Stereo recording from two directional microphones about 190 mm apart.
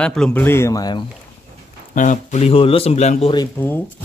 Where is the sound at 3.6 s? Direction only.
10° left (ahead or behind).